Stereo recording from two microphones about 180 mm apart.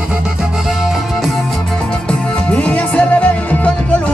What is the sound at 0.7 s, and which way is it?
Music, centre (ahead or behind).